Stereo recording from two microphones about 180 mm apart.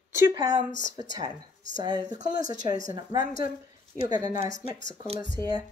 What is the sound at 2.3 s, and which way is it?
Speech, 50° left (ahead or behind).